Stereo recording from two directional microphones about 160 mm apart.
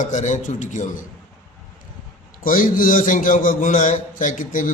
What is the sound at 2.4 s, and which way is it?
A man's voice, 60° left (ahead or behind).